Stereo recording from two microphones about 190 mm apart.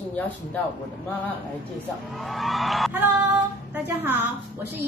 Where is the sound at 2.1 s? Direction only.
Centre (ahead or behind).